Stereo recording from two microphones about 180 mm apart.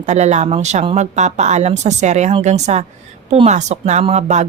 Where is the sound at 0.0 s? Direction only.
40° right (ahead or behind).